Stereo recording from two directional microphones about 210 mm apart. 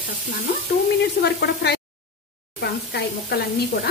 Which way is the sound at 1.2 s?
50° left (ahead or behind).